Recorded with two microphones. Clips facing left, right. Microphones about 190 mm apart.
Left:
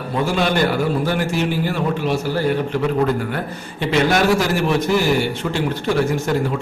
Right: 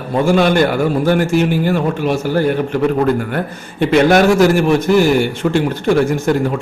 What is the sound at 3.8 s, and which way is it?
Speech, 50° right (ahead or behind).